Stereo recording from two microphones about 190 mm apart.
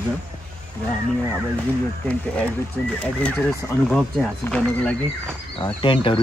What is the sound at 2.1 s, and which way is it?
Speech, 5° left (ahead or behind).